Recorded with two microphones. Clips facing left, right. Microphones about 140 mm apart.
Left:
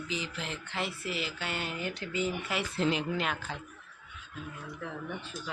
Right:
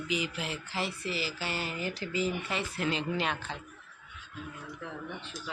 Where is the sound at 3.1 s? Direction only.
5° left (ahead or behind).